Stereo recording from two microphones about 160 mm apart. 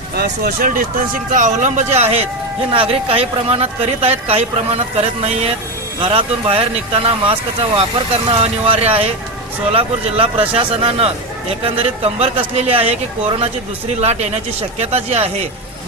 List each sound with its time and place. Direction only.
0.2 s speech: 70° right (ahead or behind); by 7.3 s 35° right (ahead or behind)
8.4 s speech: 35° right (ahead or behind)